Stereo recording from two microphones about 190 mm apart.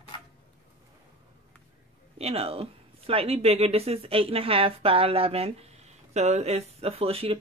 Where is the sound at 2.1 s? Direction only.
30° right (ahead or behind).